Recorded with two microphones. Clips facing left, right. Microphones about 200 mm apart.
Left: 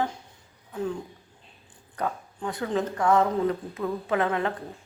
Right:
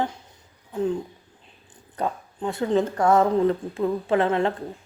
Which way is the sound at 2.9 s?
40° right (ahead or behind).